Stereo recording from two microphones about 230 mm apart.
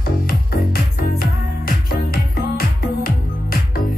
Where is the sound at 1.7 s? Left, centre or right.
Left.